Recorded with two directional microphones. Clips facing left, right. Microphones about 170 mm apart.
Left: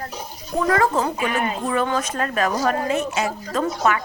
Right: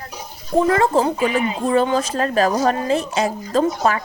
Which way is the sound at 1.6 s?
30° right (ahead or behind).